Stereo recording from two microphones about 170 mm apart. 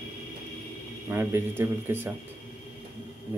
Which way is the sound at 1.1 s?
15° right (ahead or behind).